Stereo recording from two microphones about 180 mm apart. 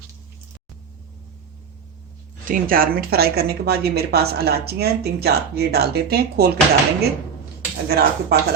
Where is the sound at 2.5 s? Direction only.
55° right (ahead or behind).